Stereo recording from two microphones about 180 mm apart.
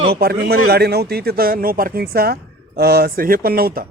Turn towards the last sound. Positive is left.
turn(degrees=-55)  # may be behind; listen again after turning